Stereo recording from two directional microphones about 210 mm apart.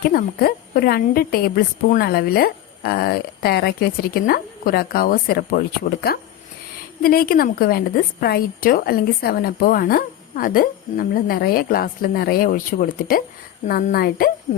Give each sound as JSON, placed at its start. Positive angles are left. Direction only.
{"t": 0.1, "sound": "a woman's voice", "side_deg": 45}